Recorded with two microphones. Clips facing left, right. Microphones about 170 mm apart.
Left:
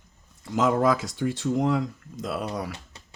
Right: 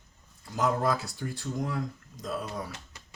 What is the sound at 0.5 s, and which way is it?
Speech, 90° left.